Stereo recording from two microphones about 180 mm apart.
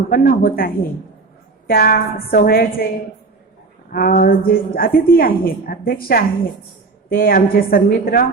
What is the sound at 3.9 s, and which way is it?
A woman's voice, 55° left (ahead or behind).